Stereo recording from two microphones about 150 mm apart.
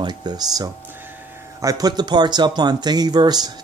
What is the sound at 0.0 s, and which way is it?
Speech, 30° right (ahead or behind).